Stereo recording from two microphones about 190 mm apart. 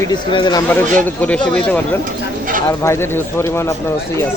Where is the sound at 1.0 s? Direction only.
10° left (ahead or behind).